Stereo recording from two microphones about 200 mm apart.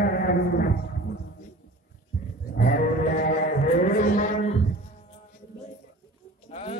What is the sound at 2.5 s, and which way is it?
Sheep, 50° left (ahead or behind).